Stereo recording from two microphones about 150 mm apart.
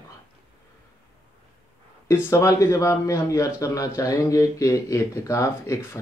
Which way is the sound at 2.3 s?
20° left (ahead or behind).